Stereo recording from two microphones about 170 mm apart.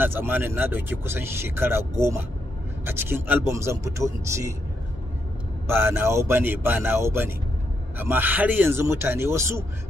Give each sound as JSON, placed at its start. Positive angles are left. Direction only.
{"t": 0.0, "sound": "speech", "side_deg": -10}
{"t": 5.7, "sound": "speech", "side_deg": -15}